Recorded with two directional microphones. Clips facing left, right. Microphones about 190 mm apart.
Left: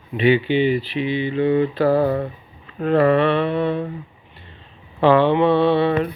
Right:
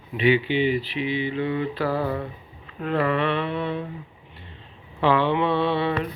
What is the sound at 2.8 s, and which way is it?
Mantra, 40° left (ahead or behind).